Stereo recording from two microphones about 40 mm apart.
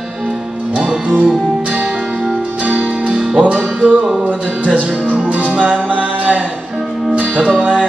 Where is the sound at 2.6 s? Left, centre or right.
Right.